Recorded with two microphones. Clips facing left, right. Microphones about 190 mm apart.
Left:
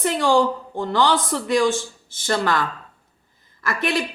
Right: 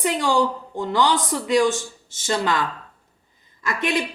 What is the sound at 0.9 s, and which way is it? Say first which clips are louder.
A woman's voice: left 1 dB; 15° right (ahead or behind).